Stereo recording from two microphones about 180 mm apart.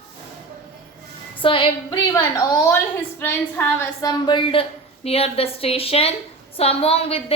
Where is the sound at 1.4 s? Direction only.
30° left (ahead or behind).